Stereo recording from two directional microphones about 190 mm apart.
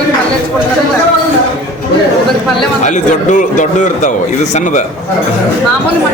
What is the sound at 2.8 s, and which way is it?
A man's voice, 40° left (ahead or behind).